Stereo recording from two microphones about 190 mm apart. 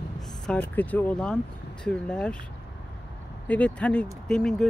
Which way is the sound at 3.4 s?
5° left (ahead or behind).